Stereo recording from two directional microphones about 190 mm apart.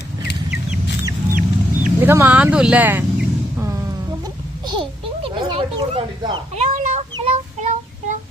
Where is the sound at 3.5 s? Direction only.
15° right (ahead or behind).